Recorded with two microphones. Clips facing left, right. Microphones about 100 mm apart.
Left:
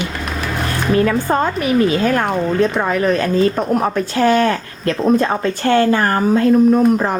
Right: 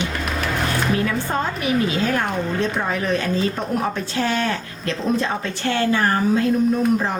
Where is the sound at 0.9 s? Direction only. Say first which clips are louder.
Left 7 dB; 50° left (ahead or behind).